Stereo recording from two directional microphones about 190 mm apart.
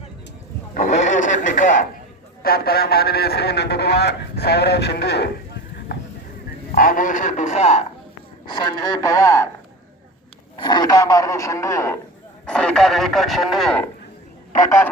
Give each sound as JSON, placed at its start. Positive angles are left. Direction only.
{"t": 0.7, "sound": "a sound", "side_deg": 40}
{"t": 2.4, "sound": "a man's voice", "side_deg": 55}
{"t": 6.7, "sound": "a man's voice", "side_deg": 45}
{"t": 8.4, "sound": "a man's voice", "side_deg": 25}
{"t": 10.6, "sound": "speech", "side_deg": 25}
{"t": 14.6, "sound": "speech", "side_deg": 15}